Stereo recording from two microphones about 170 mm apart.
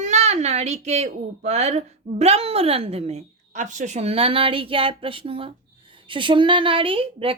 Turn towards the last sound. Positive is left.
turn(degrees=-30)  # may be behind; listen again after turning